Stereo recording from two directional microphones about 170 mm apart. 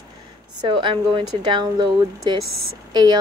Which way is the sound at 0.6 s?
30° right (ahead or behind).